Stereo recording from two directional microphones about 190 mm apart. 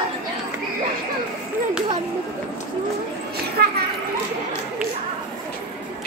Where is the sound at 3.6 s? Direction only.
50° right (ahead or behind).